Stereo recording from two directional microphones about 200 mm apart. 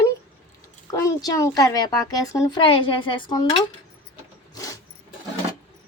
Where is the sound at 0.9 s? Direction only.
15° left (ahead or behind).